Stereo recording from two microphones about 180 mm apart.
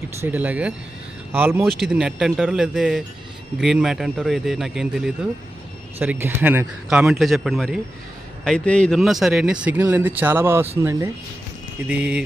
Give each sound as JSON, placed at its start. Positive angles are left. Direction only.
{"t": 0.2, "sound": "speech", "side_deg": -10}